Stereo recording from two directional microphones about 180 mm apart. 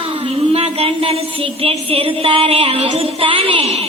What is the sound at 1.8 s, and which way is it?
Child singing, 30° right (ahead or behind).